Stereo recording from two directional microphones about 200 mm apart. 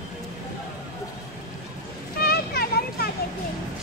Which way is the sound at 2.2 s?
50° left (ahead or behind).